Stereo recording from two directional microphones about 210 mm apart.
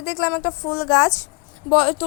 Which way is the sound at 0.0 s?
20° left (ahead or behind).